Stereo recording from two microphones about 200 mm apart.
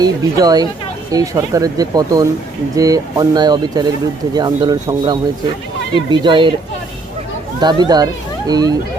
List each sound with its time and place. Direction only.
0.0 s speech: 20° right (ahead or behind)
7.6 s speech: 20° right (ahead or behind)